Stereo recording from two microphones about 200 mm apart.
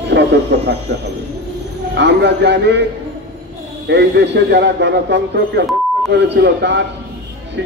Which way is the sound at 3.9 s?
60° right (ahead or behind).